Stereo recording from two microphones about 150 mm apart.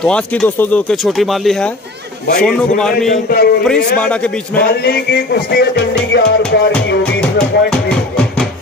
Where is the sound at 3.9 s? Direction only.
10° left (ahead or behind).